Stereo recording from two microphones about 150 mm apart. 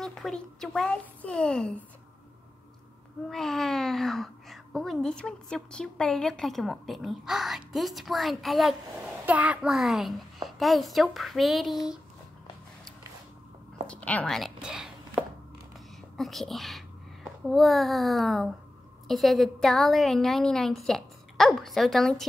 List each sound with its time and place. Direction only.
0.0 s a woman's voice: 5° left (ahead or behind)
3.3 s a woman's voice: centre (ahead or behind)
13.8 s a woman's voice: 10° left (ahead or behind)
16.2 s a woman's voice: centre (ahead or behind)